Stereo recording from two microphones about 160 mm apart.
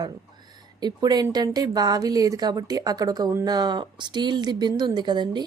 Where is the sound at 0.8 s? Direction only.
25° right (ahead or behind).